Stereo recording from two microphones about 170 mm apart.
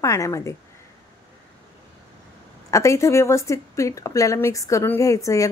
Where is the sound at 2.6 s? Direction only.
20° left (ahead or behind).